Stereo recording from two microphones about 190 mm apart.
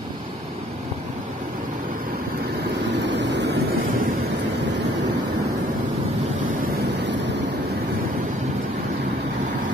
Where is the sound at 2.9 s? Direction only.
70° right (ahead or behind).